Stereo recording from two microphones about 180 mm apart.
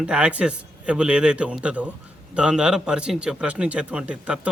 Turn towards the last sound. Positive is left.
turn(degrees=-5)  # may be behind; listen again after turning